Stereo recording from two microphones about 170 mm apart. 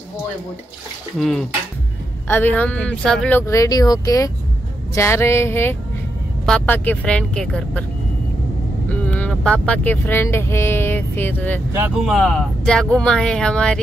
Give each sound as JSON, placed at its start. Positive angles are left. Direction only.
{"t": 2.2, "sound": "speech", "side_deg": 10}
{"t": 8.8, "sound": "speech", "side_deg": 10}
{"t": 11.7, "sound": "speech", "side_deg": -15}
{"t": 12.0, "sound": "speech", "side_deg": 0}